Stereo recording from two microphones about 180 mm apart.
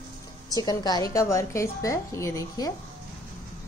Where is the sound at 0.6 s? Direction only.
20° left (ahead or behind).